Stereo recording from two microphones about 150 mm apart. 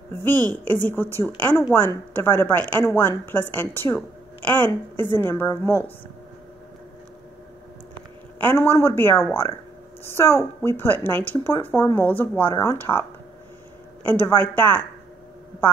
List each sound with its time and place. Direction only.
0.1 s speech: 15° left (ahead or behind)
8.4 s speech: 15° left (ahead or behind)
14.0 s speech: 15° left (ahead or behind)